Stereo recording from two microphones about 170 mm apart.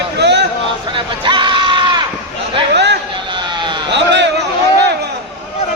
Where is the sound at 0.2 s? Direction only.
90° right.